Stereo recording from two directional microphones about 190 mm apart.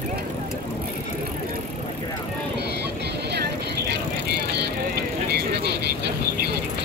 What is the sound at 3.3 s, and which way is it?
Vehicle, 60° right (ahead or behind).